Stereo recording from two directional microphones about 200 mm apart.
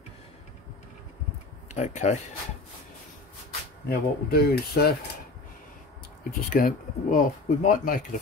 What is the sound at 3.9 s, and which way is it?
Speech, 50° left (ahead or behind).